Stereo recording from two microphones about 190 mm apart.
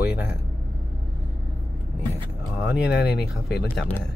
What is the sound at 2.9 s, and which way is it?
Speech, 60° left (ahead or behind).